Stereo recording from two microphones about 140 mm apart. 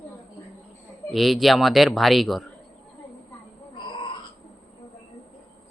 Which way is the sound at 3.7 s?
35° left (ahead or behind).